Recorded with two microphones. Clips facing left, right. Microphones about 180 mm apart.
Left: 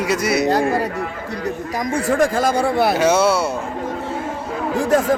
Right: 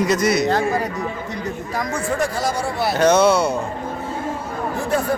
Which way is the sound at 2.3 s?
55° left (ahead or behind).